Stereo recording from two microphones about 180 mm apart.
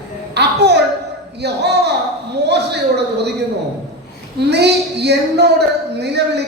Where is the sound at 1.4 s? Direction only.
65° right (ahead or behind).